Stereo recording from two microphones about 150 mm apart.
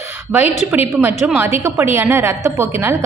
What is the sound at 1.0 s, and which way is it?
A woman's voice, 10° right (ahead or behind).